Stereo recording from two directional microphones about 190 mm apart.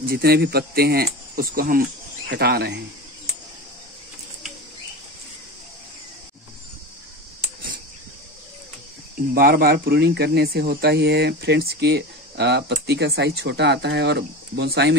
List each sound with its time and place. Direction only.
0.1 s speech: 55° right (ahead or behind)
9.3 s speech: 50° right (ahead or behind)